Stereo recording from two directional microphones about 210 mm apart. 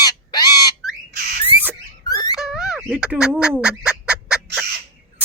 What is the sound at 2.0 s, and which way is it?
Squeak, 15° left (ahead or behind).